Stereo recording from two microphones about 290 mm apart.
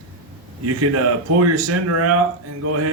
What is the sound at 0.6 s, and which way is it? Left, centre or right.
Speech, right.